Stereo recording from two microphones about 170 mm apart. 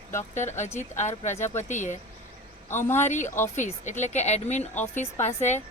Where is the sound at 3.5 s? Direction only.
45° left (ahead or behind).